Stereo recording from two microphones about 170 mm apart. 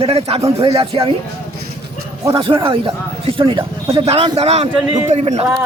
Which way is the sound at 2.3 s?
30° right (ahead or behind).